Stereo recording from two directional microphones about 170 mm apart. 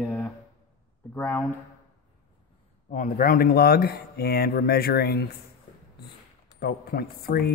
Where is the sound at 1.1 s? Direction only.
10° left (ahead or behind).